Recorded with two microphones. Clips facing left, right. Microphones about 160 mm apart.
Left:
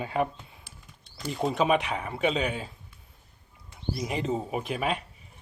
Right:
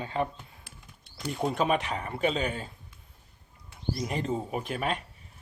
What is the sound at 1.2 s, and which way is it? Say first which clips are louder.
Speech: left 2 dB; centre (ahead or behind).